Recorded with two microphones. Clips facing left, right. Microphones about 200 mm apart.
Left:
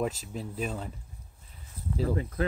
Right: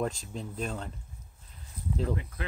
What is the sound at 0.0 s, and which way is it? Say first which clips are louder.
Speech: left 1 dB; 5° left (ahead or behind).